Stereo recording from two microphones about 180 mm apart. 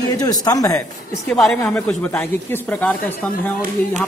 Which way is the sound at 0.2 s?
20° left (ahead or behind).